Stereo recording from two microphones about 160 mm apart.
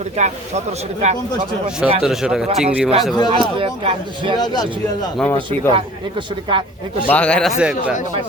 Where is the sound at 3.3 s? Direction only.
35° right (ahead or behind).